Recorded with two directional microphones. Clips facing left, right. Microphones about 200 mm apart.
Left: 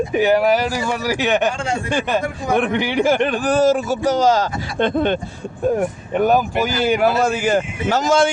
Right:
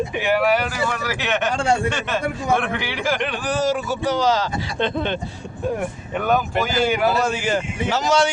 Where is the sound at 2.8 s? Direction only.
45° left (ahead or behind).